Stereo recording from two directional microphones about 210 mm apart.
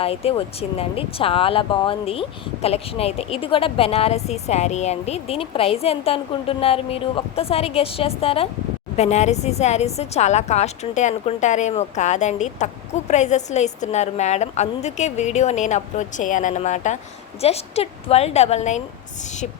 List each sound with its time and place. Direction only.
0.0 s a woman's voice: 30° left (ahead or behind)